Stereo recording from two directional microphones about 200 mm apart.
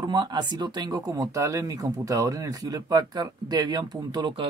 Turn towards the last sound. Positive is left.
turn(degrees=-25)  # may be behind; listen again after turning